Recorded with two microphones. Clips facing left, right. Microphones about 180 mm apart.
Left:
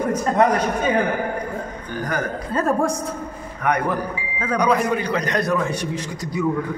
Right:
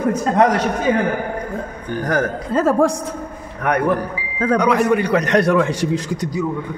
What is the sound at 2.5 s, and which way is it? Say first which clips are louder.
Speech: right 5 dB; 90° right.